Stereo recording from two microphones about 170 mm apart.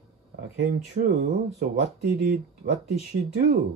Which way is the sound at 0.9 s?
65° right (ahead or behind).